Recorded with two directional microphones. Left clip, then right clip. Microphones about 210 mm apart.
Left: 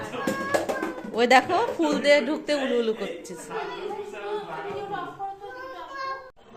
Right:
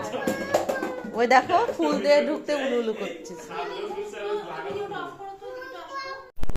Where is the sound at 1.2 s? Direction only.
15° left (ahead or behind).